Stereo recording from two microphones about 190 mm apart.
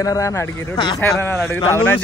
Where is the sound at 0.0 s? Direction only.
15° left (ahead or behind).